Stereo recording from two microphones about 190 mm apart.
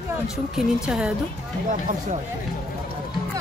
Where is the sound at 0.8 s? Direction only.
5° right (ahead or behind).